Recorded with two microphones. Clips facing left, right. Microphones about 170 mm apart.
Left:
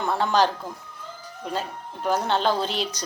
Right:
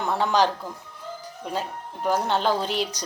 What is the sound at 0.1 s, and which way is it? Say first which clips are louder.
Speech: even; 15° right (ahead or behind).